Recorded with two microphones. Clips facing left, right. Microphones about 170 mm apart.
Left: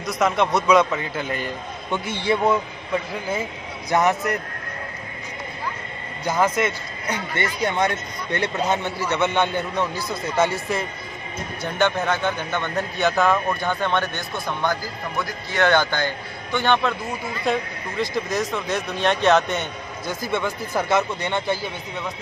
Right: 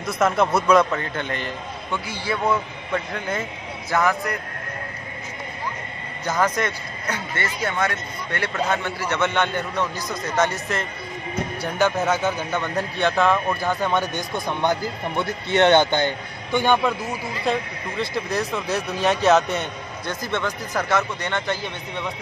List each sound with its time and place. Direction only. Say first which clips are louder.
0.0 s a man's voice: right 1 dB; centre (ahead or behind)
1.9 s speech: left 5 dB; 25° left (ahead or behind); by 3.4 s 5° left (ahead or behind)
3.9 s a man's voice: left 2 dB; 20° left (ahead or behind)
6.2 s speech: left 2 dB; 10° left (ahead or behind)
11.6 s a man's voice: even; 5° right (ahead or behind)
17.5 s a man's voice: even; centre (ahead or behind)
20.2 s speech: left 2 dB; 10° left (ahead or behind)